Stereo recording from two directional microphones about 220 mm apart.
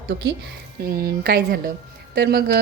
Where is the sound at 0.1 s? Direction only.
50° right (ahead or behind).